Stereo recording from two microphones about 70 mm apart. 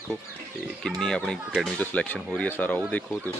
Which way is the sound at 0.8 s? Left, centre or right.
Centre.